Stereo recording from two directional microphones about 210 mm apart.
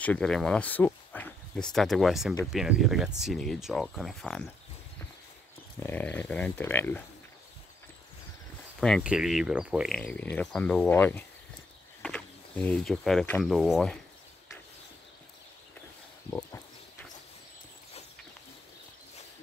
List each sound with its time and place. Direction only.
0.0 s speech: 5° left (ahead or behind)
5.9 s speech: 10° left (ahead or behind)
8.8 s speech: centre (ahead or behind)
16.3 s a sound: 10° left (ahead or behind)